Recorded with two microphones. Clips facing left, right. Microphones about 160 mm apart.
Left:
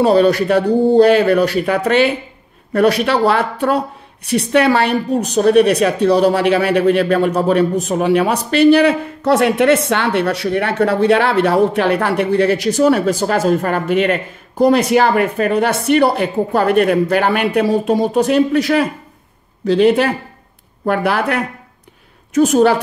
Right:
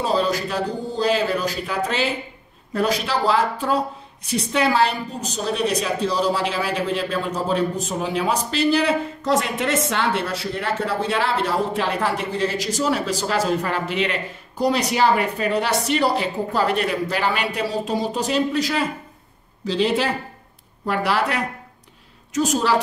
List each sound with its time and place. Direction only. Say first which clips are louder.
0.0 s speech: left 10 dB; 65° left (ahead or behind)